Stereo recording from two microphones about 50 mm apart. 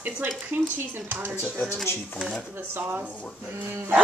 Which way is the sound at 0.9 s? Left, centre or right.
Right.